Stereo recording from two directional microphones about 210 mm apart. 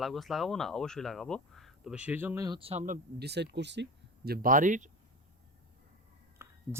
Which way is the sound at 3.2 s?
55° right (ahead or behind).